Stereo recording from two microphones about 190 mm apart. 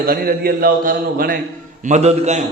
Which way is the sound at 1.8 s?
35° right (ahead or behind).